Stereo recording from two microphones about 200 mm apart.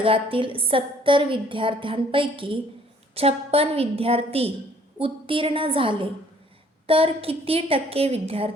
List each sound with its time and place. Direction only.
0.0 s a woman's voice: 25° right (ahead or behind)